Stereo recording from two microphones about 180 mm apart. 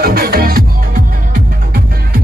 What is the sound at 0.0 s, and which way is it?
Music, 55° right (ahead or behind).